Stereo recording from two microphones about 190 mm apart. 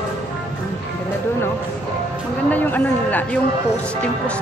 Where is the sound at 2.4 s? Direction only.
10° left (ahead or behind).